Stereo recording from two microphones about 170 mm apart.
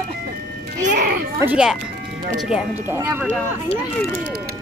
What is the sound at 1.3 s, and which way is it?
A woman's voice, 10° right (ahead or behind).